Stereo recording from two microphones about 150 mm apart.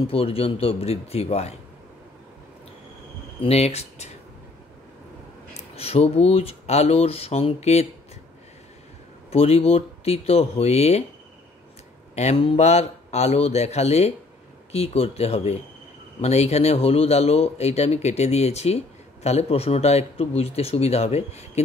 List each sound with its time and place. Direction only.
0.0 s speech: 40° left (ahead or behind)
3.4 s speech: 45° left (ahead or behind)
5.8 s speech: 40° left (ahead or behind)
9.3 s speech: 40° left (ahead or behind)
12.2 s speech: 45° left (ahead or behind)